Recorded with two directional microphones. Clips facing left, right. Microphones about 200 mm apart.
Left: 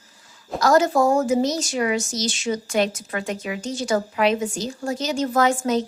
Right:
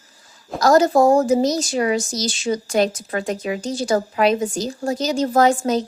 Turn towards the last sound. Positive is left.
turn(degrees=-35)  # may be behind; listen again after turning